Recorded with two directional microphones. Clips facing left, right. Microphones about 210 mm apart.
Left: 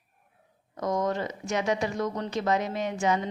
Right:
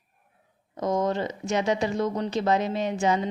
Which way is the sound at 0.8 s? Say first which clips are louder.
Right 2 dB; 25° right (ahead or behind).